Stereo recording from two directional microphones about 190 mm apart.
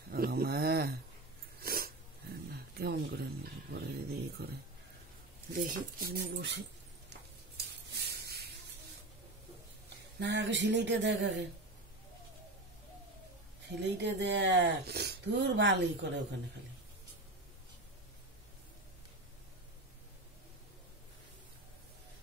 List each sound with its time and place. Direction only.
0.1 s a sound: 55° right (ahead or behind)
5.5 s speech: 50° right (ahead or behind); by 6.6 s 65° right (ahead or behind)
10.1 s speech: 70° right (ahead or behind)
13.7 s speech: 65° right (ahead or behind)